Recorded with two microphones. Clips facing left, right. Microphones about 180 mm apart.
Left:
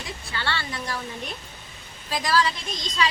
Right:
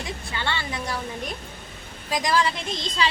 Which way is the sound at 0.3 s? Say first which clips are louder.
Right 1 dB; 20° right (ahead or behind).